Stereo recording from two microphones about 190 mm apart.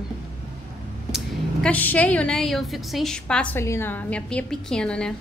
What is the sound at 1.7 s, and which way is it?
A woman's voice, 10° left (ahead or behind).